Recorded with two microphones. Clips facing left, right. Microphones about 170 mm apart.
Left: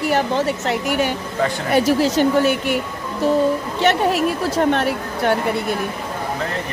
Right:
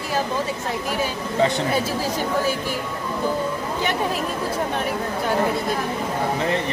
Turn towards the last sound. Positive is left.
turn(degrees=75)  # may be behind; listen again after turning